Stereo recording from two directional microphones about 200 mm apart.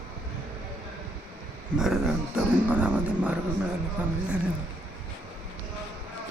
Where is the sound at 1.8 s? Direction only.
5° right (ahead or behind).